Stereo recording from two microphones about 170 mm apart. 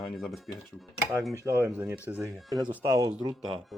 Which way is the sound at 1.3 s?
15° right (ahead or behind).